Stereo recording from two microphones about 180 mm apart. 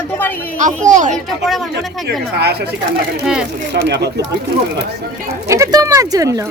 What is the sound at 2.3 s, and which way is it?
Speech, 65° right (ahead or behind).